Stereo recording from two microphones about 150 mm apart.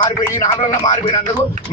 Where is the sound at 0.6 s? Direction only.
50° left (ahead or behind).